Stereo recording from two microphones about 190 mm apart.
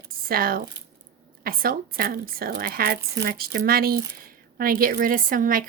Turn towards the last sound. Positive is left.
turn(degrees=-45)  # may be behind; listen again after turning